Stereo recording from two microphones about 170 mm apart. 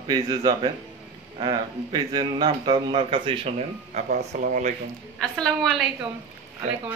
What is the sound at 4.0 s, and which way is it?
Speech, 50° right (ahead or behind).